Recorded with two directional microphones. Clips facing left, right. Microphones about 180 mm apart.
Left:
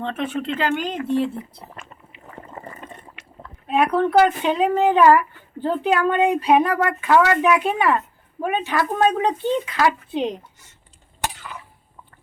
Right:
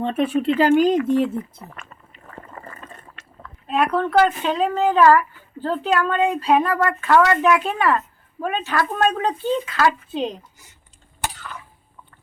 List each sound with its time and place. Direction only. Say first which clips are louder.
0.3 s speech: right 8 dB; 35° right (ahead or behind)
1.4 s liquid: right 4 dB; 20° left (ahead or behind)
3.7 s speech: left 2 dB; 15° left (ahead or behind)